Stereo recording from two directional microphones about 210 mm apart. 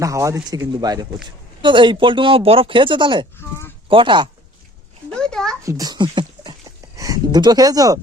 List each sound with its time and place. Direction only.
0.0 s speech: 15° right (ahead or behind)
5.1 s a child's voice: 5° left (ahead or behind)
5.6 s a sound: 15° right (ahead or behind)